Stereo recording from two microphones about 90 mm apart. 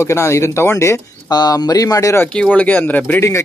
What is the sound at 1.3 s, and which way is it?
Speech, 50° left (ahead or behind).